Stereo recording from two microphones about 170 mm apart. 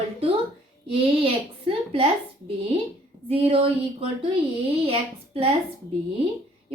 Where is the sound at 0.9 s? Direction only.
35° right (ahead or behind).